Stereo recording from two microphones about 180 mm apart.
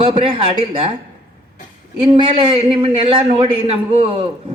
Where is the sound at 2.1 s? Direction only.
30° right (ahead or behind).